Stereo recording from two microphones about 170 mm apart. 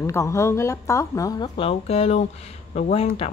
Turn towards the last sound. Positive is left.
turn(degrees=35)  # may be behind; listen again after turning